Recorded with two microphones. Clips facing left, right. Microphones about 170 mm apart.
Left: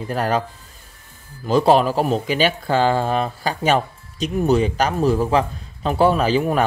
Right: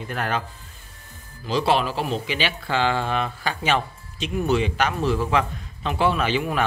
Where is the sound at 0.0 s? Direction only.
35° left (ahead or behind).